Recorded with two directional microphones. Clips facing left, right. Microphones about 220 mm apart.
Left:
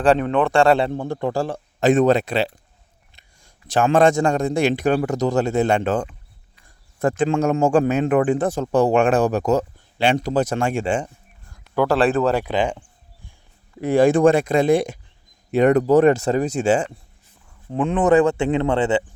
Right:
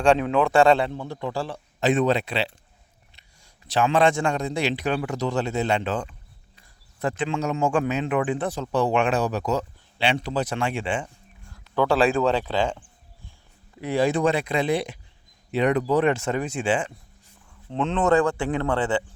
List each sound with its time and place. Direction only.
0.0 s speech: centre (ahead or behind)
0.9 s speech: 50° left (ahead or behind)
3.7 s speech: 45° left (ahead or behind)
11.7 s speech: 5° left (ahead or behind)
13.8 s speech: 50° left (ahead or behind)
17.7 s speech: 10° left (ahead or behind)